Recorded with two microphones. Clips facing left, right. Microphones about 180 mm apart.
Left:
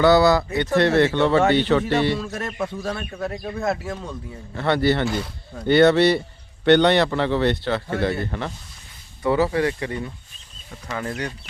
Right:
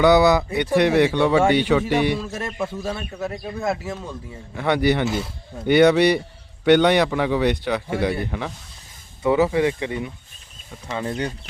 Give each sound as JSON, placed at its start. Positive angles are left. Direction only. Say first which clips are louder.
{"t": 0.0, "sound": "speech", "louder": "even", "side_deg": -20}
{"t": 4.5, "sound": "speech", "louder": "even", "side_deg": -15}
{"t": 5.0, "sound": "speech", "louder": "right 1 dB", "side_deg": -5}
{"t": 5.6, "sound": "speech", "louder": "even", "side_deg": -15}